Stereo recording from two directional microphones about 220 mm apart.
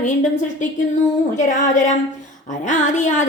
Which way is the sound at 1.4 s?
35° left (ahead or behind).